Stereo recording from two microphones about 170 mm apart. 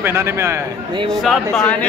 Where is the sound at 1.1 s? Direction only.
Centre (ahead or behind).